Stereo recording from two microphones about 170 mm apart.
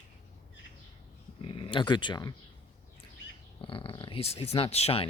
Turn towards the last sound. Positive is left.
turn(degrees=35)  # may be behind; listen again after turning